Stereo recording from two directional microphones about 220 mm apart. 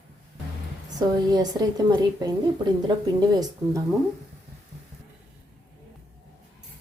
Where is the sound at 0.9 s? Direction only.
15° right (ahead or behind).